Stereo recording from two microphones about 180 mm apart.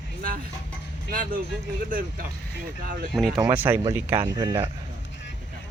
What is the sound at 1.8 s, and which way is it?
Speech, 50° right (ahead or behind).